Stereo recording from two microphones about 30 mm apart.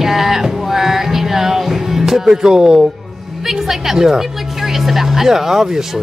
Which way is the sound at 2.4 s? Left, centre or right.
Right.